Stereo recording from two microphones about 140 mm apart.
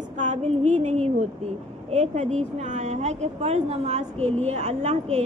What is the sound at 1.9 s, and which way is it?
A woman's voice, 55° right (ahead or behind).